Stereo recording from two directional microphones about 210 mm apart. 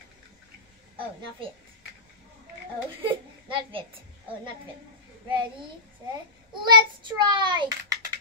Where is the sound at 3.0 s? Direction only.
25° right (ahead or behind).